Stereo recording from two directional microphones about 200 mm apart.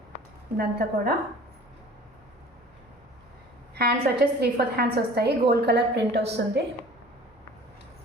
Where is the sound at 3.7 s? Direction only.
55° right (ahead or behind).